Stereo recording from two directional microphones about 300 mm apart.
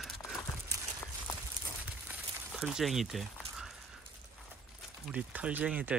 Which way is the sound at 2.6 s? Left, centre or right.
Centre.